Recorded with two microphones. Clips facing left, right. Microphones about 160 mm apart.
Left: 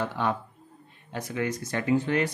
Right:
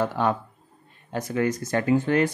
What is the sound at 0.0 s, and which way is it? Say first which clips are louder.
Speech: right 4 dB; 45° right (ahead or behind).